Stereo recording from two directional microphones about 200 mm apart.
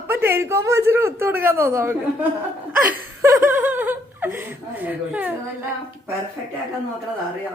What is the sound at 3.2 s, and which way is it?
A woman's voice, 15° right (ahead or behind).